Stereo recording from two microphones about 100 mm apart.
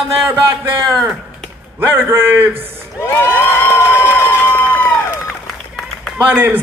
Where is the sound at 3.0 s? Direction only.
25° left (ahead or behind).